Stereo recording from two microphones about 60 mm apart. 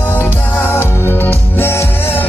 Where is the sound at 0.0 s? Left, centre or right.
Left.